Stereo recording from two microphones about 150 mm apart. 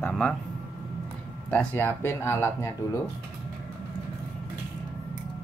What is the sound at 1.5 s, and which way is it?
Speech, 10° left (ahead or behind).